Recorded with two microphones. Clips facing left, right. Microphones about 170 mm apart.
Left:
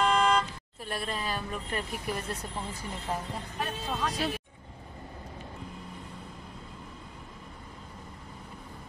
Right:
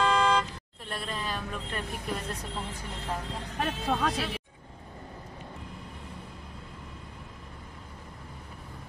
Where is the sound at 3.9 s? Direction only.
65° right (ahead or behind).